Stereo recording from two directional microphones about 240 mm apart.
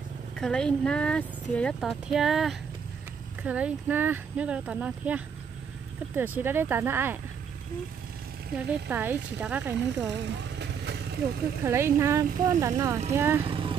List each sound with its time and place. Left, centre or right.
0.4 s speech: centre
8.6 s speech: centre
10.2 s vehicle: right
11.6 s speech: centre
13.4 s speech: right